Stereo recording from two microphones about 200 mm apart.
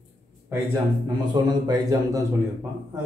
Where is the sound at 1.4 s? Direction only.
20° right (ahead or behind).